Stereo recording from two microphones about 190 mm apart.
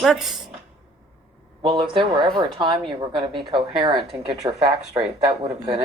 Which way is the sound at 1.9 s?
25° right (ahead or behind).